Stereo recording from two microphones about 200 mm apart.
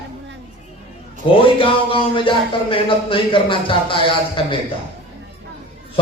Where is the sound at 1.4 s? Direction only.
25° left (ahead or behind).